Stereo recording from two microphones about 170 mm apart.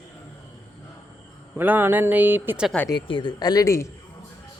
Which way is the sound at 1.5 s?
10° right (ahead or behind).